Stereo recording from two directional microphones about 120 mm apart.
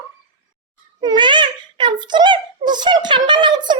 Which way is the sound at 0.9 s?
40° right (ahead or behind).